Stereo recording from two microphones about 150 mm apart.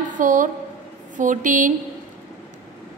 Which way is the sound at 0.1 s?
60° right (ahead or behind).